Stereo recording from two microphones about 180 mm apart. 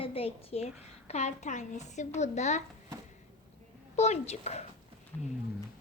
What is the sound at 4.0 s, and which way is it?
Speech, 35° left (ahead or behind).